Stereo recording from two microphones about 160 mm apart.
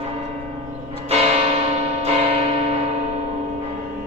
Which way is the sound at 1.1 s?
40° right (ahead or behind).